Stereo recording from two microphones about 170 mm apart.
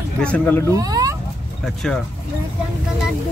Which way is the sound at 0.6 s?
20° right (ahead or behind).